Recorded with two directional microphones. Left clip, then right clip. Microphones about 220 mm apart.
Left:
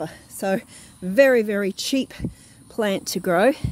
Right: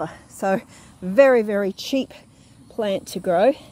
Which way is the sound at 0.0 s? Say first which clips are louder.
Right 2 dB; 20° left (ahead or behind).